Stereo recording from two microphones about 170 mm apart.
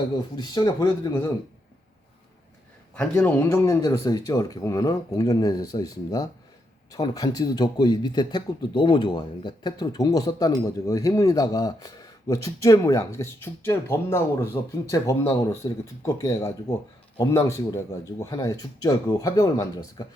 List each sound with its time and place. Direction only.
0.3 s speech: 25° left (ahead or behind)
2.9 s speech: 5° left (ahead or behind)